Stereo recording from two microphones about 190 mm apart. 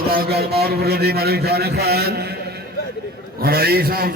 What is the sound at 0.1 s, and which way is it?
A man's voice, 55° right (ahead or behind).